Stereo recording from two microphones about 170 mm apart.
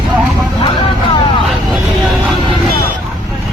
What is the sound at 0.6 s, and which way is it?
Vehicle, 30° left (ahead or behind).